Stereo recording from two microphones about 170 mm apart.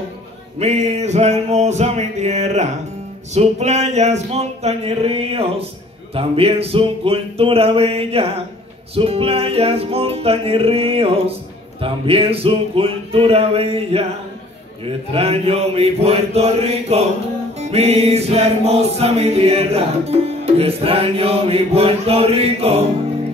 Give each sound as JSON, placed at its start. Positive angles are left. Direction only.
{"t": 0.6, "sound": "music", "side_deg": -40}
{"t": 15.1, "sound": "music", "side_deg": -35}